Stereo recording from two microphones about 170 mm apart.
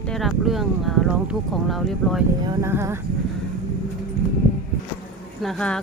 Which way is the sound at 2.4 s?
15° right (ahead or behind).